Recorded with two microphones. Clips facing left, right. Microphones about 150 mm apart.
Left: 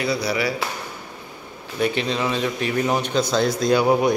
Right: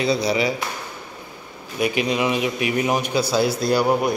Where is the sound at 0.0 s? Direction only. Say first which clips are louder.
Right 3 dB; 20° right (ahead or behind).